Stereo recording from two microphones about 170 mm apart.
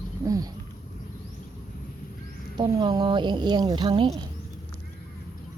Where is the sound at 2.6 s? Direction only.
25° right (ahead or behind).